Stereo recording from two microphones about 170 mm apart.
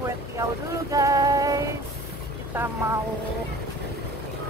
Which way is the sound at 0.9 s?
20° right (ahead or behind).